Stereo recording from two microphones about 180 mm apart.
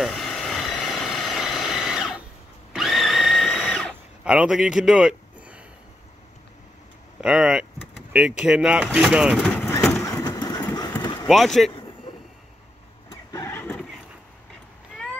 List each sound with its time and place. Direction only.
0.0 s vehicle: centre (ahead or behind)
2.7 s blender: centre (ahead or behind)
7.2 s speech: 5° right (ahead or behind)
9.7 s vehicle: 15° left (ahead or behind)
10.0 s engine: 20° left (ahead or behind)
11.2 s speech: centre (ahead or behind)
13.1 s vehicle: 15° left (ahead or behind)